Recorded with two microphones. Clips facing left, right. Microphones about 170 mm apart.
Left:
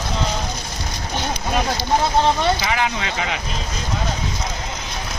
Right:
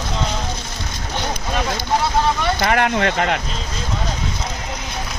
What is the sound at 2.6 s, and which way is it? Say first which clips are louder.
Speech: right 5 dB; 60° right (ahead or behind).